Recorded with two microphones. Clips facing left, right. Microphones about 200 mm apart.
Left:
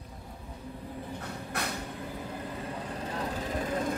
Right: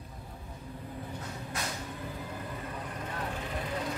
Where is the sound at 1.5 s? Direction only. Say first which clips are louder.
Left 3 dB; 60° left (ahead or behind).